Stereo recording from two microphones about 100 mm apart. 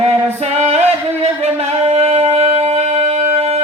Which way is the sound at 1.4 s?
90° right.